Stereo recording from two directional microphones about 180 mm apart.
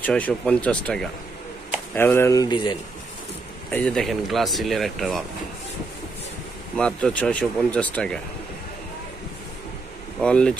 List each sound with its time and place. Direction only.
0.0 s speech: 5° left (ahead or behind); by 2.8 s 25° left (ahead or behind)
3.7 s speech: 5° left (ahead or behind)
6.8 s speech: 5° left (ahead or behind)
10.2 s speech: 5° left (ahead or behind)